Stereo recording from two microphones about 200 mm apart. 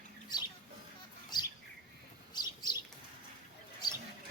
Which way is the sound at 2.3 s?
20° left (ahead or behind).